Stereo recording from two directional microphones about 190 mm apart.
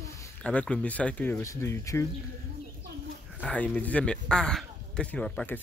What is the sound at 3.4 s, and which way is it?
Speech, 10° left (ahead or behind).